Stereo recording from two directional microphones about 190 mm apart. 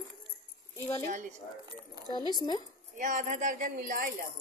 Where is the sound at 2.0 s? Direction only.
20° left (ahead or behind).